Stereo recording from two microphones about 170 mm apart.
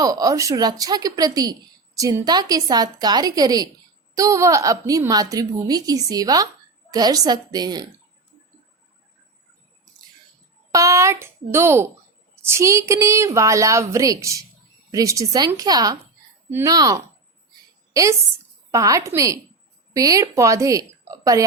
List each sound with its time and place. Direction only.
0.0 s a woman's voice: 20° right (ahead or behind)
10.7 s a woman's voice: 20° right (ahead or behind)